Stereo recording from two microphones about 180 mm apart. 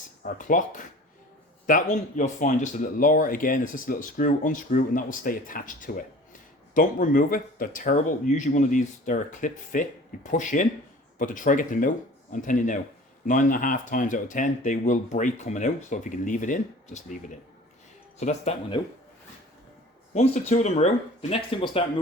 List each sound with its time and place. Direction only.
0.2 s speech: 50° left (ahead or behind)
18.2 s speech: 35° left (ahead or behind)
20.1 s speech: 40° left (ahead or behind)